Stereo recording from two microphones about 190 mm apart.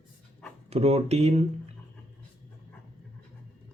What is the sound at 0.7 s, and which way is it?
Speech, 30° right (ahead or behind).